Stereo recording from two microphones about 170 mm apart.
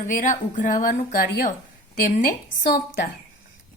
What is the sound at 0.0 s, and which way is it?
A woman's voice, 50° left (ahead or behind).